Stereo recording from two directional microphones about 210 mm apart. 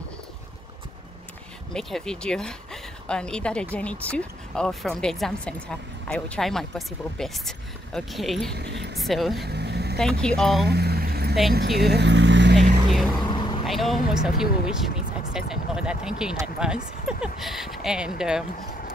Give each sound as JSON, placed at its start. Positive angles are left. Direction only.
{"t": 1.7, "sound": "a woman's voice", "side_deg": 0}
{"t": 8.5, "sound": "a sound", "side_deg": -55}
{"t": 8.9, "sound": "speech", "side_deg": 0}
{"t": 9.5, "sound": "vehicle", "side_deg": -50}
{"t": 9.9, "sound": "a woman's voice", "side_deg": 5}
{"t": 10.7, "sound": "a sound", "side_deg": -50}
{"t": 11.5, "sound": "speech", "side_deg": -50}
{"t": 13.2, "sound": "vehicle", "side_deg": 20}
{"t": 13.7, "sound": "a woman's voice", "side_deg": 0}